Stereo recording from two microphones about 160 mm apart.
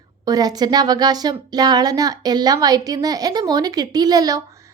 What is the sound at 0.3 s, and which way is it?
Speech, 25° right (ahead or behind).